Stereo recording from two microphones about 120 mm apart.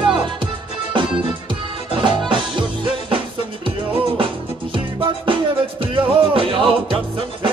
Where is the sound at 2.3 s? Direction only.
45° right (ahead or behind).